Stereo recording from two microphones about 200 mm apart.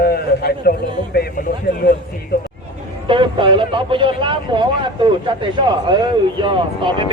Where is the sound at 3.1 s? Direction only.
25° right (ahead or behind).